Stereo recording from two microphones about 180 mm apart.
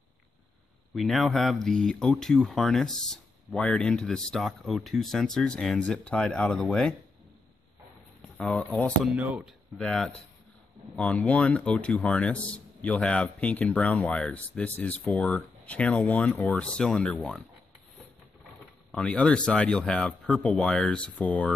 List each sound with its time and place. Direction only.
0.9 s speech: centre (ahead or behind)
8.4 s speech: 5° left (ahead or behind)
9.1 s speech: 5° right (ahead or behind)
9.8 s a man's voice: 5° left (ahead or behind)
18.9 s speech: 5° left (ahead or behind)